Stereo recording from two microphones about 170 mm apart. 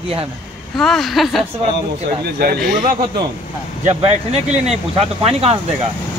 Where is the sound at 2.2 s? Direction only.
70° right (ahead or behind).